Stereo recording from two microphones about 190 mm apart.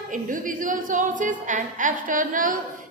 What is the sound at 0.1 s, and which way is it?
A woman's voice, 45° right (ahead or behind).